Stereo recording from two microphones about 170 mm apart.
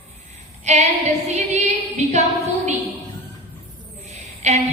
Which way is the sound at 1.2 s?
40° right (ahead or behind).